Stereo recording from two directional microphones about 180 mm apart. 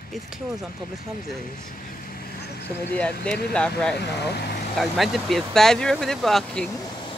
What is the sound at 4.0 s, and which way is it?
Speech, 65° left (ahead or behind).